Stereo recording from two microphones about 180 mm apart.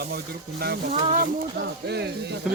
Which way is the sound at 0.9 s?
40° right (ahead or behind).